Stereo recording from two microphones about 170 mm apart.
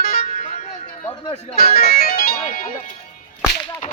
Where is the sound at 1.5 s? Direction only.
65° left (ahead or behind).